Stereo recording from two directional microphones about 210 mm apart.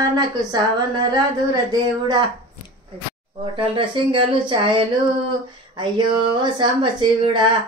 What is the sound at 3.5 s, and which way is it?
Speech, 25° right (ahead or behind).